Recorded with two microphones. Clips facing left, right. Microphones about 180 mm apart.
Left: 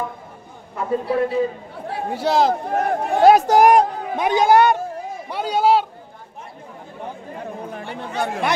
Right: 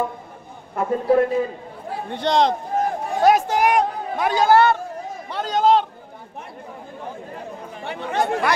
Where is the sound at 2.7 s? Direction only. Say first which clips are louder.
Left 3 dB; 65° left (ahead or behind).